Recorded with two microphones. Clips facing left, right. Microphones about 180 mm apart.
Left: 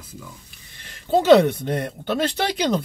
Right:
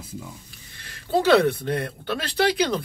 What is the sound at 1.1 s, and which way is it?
Speech, 20° left (ahead or behind).